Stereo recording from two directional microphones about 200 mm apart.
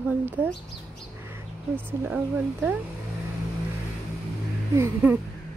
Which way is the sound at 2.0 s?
10° right (ahead or behind).